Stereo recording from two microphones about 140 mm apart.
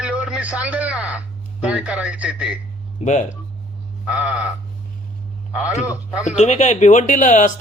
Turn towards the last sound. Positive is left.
turn(degrees=65)  # may be behind; listen again after turning